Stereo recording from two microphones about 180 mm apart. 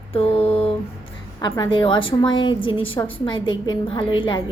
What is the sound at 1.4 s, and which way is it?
Speech, 25° left (ahead or behind).